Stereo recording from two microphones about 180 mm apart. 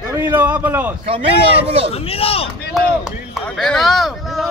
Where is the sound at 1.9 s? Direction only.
35° left (ahead or behind).